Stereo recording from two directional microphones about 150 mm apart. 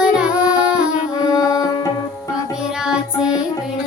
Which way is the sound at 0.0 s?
5° right (ahead or behind).